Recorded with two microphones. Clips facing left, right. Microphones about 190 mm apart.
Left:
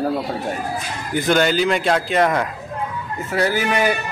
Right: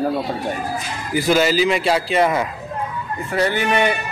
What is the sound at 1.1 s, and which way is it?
A man's voice, 5° right (ahead or behind).